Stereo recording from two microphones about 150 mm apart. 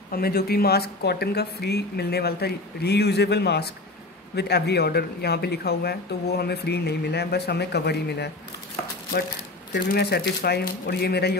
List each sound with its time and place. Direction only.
0.1 s speech: 85° left
9.8 s speech: 90° left